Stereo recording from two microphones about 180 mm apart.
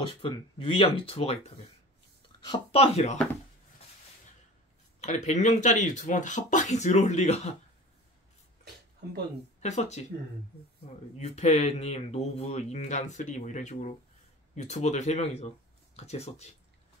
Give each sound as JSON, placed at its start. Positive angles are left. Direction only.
{"t": 0.2, "sound": "speech", "side_deg": 30}
{"t": 5.0, "sound": "speech", "side_deg": 40}
{"t": 9.6, "sound": "speech", "side_deg": 40}